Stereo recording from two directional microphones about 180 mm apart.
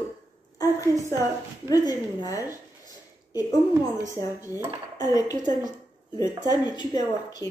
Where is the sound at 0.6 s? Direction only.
20° left (ahead or behind).